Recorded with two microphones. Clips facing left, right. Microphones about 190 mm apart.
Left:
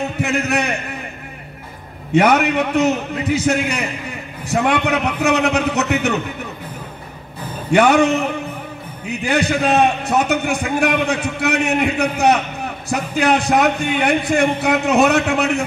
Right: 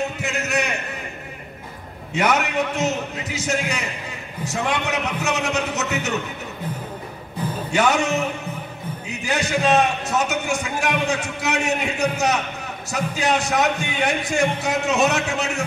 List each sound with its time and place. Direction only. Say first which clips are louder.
0.2 s a man's voice: left 5 dB; 60° left (ahead or behind)
2.1 s a man's voice: left 6 dB; 60° left (ahead or behind)
7.7 s a man's voice: left 7 dB; 60° left (ahead or behind)
9.2 s a man's voice: left 4 dB; 60° left (ahead or behind)